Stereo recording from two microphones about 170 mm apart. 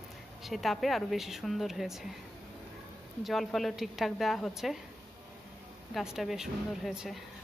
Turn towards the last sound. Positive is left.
turn(degrees=0)  # may be behind; listen again after turning